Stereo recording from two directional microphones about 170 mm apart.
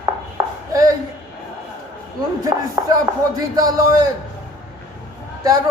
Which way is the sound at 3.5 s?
20° right (ahead or behind).